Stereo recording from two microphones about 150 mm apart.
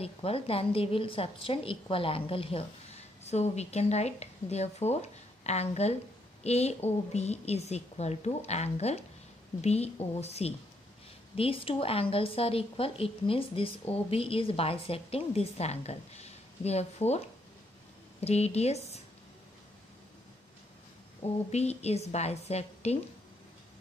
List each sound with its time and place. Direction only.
0.0 s a woman's voice: 40° left (ahead or behind)
18.2 s a woman's voice: 45° left (ahead or behind)
21.2 s a woman's voice: 45° left (ahead or behind)